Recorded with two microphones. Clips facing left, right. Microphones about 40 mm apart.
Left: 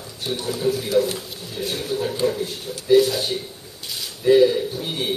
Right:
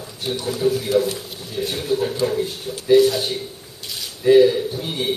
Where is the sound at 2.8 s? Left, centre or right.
Centre.